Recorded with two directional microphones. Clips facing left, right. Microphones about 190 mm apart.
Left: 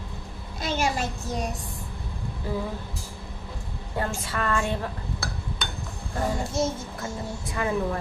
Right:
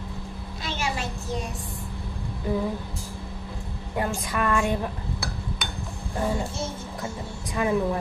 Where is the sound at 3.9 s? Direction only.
15° right (ahead or behind).